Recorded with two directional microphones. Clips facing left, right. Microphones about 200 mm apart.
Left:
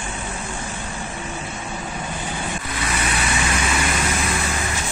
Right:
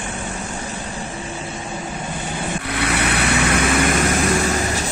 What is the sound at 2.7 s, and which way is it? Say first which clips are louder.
Vehicle: right 6 dB; 65° right (ahead or behind).